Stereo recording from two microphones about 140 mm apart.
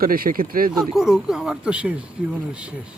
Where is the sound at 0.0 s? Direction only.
90° right.